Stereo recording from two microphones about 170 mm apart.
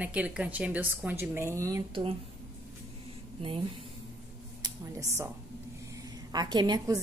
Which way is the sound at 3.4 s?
30° right (ahead or behind).